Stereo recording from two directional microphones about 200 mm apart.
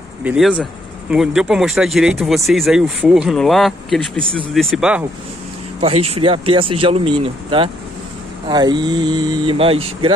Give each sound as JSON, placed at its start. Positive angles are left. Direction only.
{"t": 0.2, "sound": "speech", "side_deg": -5}
{"t": 5.8, "sound": "speech", "side_deg": -30}